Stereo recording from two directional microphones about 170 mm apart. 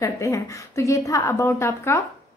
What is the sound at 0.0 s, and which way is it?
Speech, 20° left (ahead or behind).